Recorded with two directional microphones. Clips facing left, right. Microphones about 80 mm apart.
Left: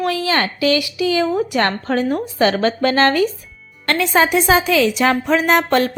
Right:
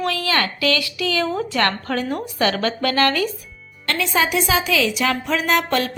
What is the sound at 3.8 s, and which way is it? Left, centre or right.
A woman's voice, left.